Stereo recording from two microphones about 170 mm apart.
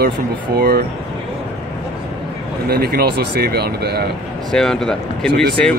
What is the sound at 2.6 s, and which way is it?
Speech, 65° right (ahead or behind).